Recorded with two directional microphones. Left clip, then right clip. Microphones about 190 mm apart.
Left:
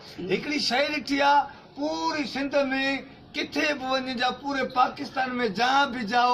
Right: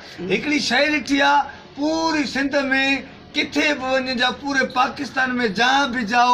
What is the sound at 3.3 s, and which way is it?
A man's voice, 5° left (ahead or behind).